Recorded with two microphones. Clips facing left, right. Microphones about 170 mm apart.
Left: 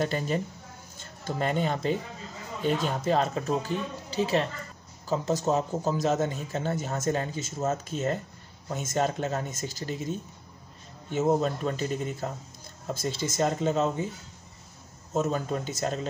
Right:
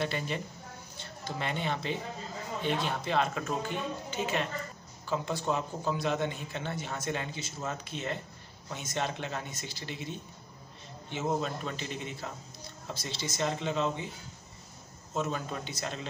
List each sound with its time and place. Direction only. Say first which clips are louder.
0.0 s a man's voice: left 5 dB; 40° left (ahead or behind)
15.1 s a man's voice: left 6 dB; 45° left (ahead or behind)